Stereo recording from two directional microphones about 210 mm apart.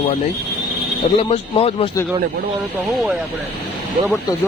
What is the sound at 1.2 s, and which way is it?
Speech, 30° left (ahead or behind).